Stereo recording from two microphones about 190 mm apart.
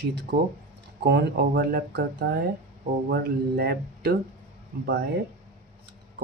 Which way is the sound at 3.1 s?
55° right (ahead or behind).